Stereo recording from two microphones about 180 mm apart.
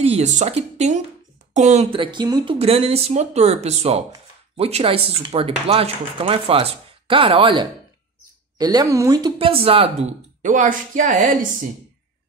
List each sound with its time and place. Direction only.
0.0 s speech: 35° right (ahead or behind)
2.6 s speech: 35° right (ahead or behind)
8.5 s speech: 20° right (ahead or behind); by 11.3 s 45° right (ahead or behind)